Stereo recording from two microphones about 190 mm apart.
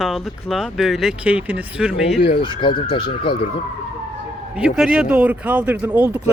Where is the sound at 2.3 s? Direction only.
25° left (ahead or behind).